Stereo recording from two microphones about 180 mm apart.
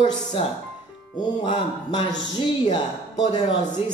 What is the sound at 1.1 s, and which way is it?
Speech, 25° left (ahead or behind).